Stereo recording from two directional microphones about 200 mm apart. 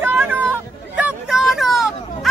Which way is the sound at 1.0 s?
5° right (ahead or behind).